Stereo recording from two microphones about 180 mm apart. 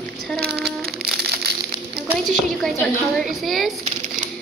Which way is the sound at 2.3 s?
Centre (ahead or behind).